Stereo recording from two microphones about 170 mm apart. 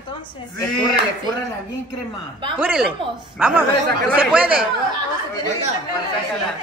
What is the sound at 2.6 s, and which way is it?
Speech, 5° right (ahead or behind).